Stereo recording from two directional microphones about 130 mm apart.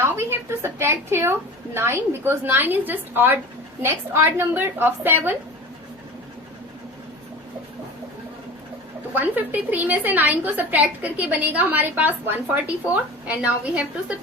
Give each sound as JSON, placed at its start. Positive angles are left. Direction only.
{"t": 0.0, "sound": "a woman's voice", "side_deg": -20}
{"t": 9.1, "sound": "a woman's voice", "side_deg": -15}